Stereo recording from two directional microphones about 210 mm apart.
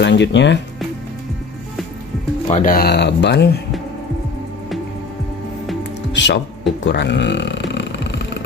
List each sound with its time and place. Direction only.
0.0 s speech: 60° left (ahead or behind)
2.5 s speech: 40° left (ahead or behind)
6.1 s speech: 60° left (ahead or behind)
6.8 s a sound: 55° left (ahead or behind)